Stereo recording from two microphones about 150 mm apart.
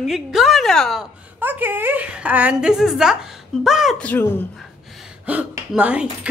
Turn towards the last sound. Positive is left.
turn(degrees=-10)  # may be behind; listen again after turning